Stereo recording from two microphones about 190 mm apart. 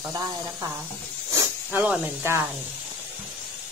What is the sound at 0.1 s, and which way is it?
Speech, 15° right (ahead or behind).